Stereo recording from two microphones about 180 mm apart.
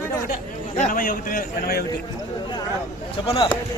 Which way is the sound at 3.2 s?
30° left (ahead or behind).